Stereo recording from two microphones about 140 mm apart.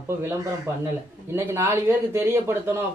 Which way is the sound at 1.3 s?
15° right (ahead or behind).